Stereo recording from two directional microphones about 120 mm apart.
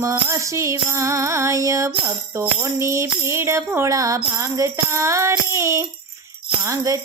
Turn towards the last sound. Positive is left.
turn(degrees=-30)  # may be behind; listen again after turning